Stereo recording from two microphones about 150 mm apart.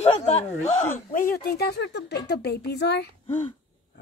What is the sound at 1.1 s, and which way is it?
Speech, 65° left (ahead or behind).